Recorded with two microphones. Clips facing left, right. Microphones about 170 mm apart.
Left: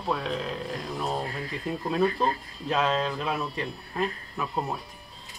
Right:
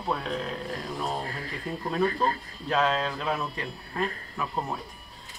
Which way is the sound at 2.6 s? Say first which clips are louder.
Even; 5° left (ahead or behind).